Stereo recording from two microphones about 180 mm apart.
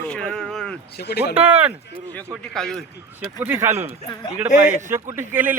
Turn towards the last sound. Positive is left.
turn(degrees=-10)  # may be behind; listen again after turning